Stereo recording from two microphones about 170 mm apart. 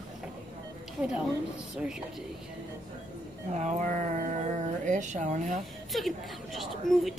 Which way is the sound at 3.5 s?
45° right (ahead or behind).